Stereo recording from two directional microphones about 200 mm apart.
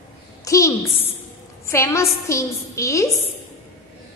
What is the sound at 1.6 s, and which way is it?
A woman's voice, 15° left (ahead or behind).